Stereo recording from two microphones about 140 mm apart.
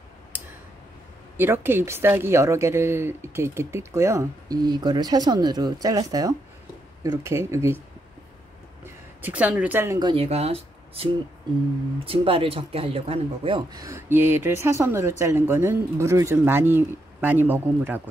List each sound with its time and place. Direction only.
1.3 s speech: 15° right (ahead or behind)
8.8 s speech: 10° right (ahead or behind)
9.9 s speech: 35° right (ahead or behind)
10.2 s speech: 45° right (ahead or behind)
13.7 s speech: 25° right (ahead or behind)